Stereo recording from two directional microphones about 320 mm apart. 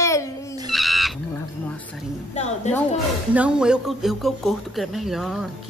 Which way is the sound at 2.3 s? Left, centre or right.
Left.